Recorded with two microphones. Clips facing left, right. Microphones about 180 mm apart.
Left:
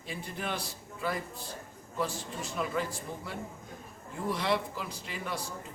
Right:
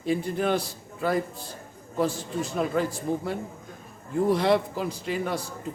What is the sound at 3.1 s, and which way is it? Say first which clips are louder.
Speech: right 13 dB; 45° right (ahead or behind).